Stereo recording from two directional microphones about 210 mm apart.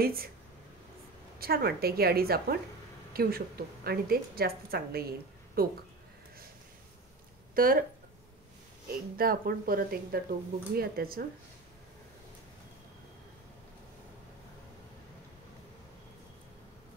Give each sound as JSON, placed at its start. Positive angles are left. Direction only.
{"t": 0.0, "sound": "a woman's voice", "side_deg": -45}
{"t": 1.4, "sound": "a woman's voice", "side_deg": -45}
{"t": 7.5, "sound": "speech", "side_deg": -45}
{"t": 8.8, "sound": "a woman's voice", "side_deg": -45}